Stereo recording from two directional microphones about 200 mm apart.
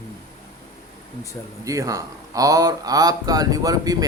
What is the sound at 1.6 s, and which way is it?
Speech, 15° right (ahead or behind).